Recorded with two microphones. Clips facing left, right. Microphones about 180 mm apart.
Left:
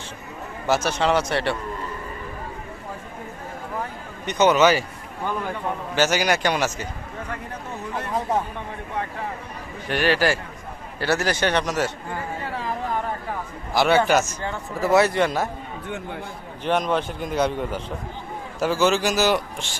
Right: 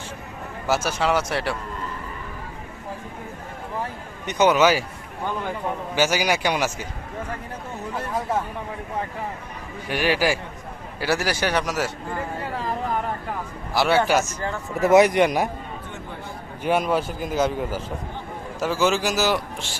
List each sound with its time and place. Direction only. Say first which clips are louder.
0.7 s a man's voice: left 1 dB; 5° right (ahead or behind)
4.3 s a man's voice: left 1 dB; 10° right (ahead or behind)
6.0 s a man's voice: left 1 dB; 10° right (ahead or behind)
9.9 s a man's voice: left 1 dB; 10° right (ahead or behind)
13.7 s a man's voice: left 1 dB; 5° right (ahead or behind)
14.8 s a man's voice: right 3 dB; 20° right (ahead or behind)
16.6 s a man's voice: right 1 dB; 5° right (ahead or behind)